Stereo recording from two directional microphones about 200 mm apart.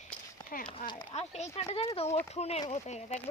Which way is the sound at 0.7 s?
25° left (ahead or behind).